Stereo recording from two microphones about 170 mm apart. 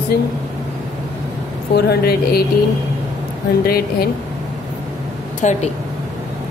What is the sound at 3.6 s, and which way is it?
Speech, 65° left (ahead or behind).